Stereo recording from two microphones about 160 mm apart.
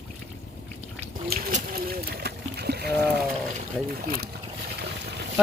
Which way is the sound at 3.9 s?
70° right (ahead or behind).